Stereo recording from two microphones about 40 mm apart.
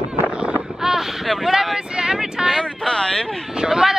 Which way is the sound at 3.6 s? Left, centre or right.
Centre.